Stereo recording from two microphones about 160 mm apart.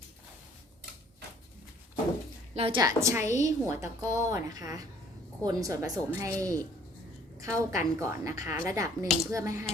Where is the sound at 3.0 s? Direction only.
15° right (ahead or behind).